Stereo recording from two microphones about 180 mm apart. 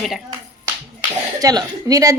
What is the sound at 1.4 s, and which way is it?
Speech, 20° right (ahead or behind).